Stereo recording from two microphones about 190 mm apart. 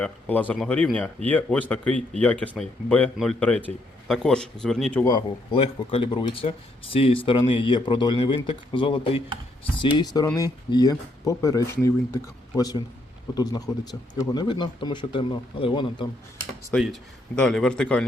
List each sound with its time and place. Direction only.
0.0 s a man's voice: 10° left (ahead or behind)
5.0 s speech: 25° left (ahead or behind)
16.7 s a man's voice: centre (ahead or behind)